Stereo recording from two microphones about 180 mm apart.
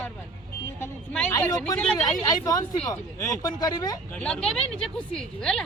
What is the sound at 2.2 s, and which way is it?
Speech, 20° left (ahead or behind).